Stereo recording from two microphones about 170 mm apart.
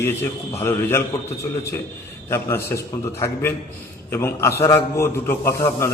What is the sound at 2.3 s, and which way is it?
Speech, 15° left (ahead or behind).